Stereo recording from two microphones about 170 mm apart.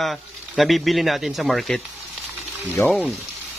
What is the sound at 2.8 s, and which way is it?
Speech, 15° left (ahead or behind).